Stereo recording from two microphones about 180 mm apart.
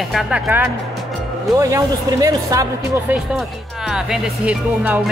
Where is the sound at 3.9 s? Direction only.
5° right (ahead or behind).